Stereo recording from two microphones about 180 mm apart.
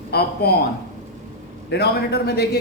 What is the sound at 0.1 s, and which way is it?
Speech, 60° left (ahead or behind).